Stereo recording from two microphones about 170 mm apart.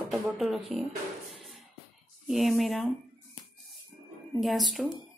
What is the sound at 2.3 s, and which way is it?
Speech, centre (ahead or behind).